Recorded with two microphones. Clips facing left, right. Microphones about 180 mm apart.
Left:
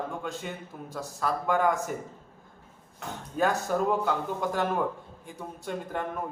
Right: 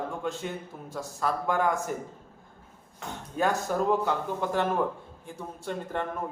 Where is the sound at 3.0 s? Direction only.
5° left (ahead or behind).